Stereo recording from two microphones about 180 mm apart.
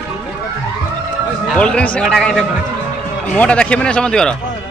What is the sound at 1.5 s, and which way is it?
Speech, 5° left (ahead or behind).